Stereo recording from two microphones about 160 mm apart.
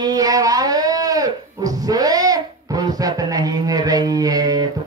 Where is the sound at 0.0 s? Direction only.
20° right (ahead or behind).